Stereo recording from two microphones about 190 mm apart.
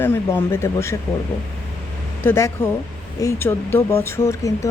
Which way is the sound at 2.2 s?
15° left (ahead or behind).